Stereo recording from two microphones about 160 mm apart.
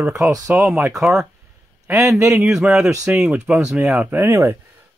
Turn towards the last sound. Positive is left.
turn(degrees=-15)  # may be behind; listen again after turning